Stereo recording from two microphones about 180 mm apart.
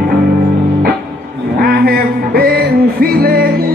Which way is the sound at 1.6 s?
55° right (ahead or behind).